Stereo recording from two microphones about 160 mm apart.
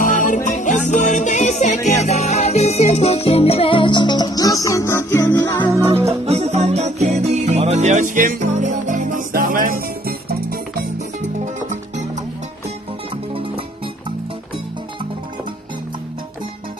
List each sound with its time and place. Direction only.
0.0 s music: 50° left (ahead or behind); by 5.7 s 15° left (ahead or behind)
5.7 s music: 15° right (ahead or behind)
6.0 s music: 40° right (ahead or behind); by 10.1 s 60° right (ahead or behind)